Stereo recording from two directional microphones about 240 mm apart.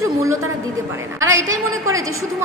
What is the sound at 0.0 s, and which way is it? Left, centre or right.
Speech, centre.